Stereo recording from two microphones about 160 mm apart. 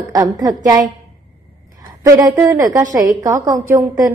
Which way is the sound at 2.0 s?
20° right (ahead or behind).